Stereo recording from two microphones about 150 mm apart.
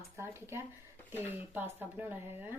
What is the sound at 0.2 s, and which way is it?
Speech, 15° right (ahead or behind).